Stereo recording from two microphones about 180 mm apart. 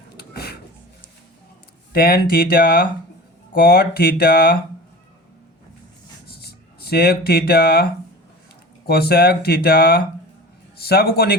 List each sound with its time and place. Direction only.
0.2 s a sound: 60° left (ahead or behind)
1.9 s speech: 55° left (ahead or behind)
6.2 s writing: 60° left (ahead or behind)
8.9 s speech: 60° left (ahead or behind)